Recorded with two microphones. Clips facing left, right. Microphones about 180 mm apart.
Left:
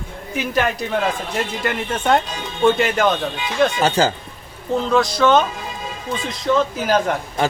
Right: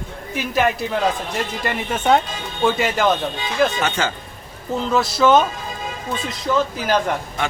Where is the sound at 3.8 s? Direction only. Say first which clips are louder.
Left 5 dB; 35° left (ahead or behind).